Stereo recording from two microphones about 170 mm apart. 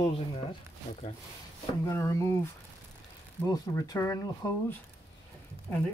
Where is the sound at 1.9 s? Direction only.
20° left (ahead or behind).